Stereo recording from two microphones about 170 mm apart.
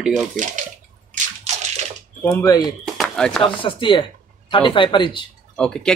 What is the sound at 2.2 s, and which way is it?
Speech, 15° left (ahead or behind).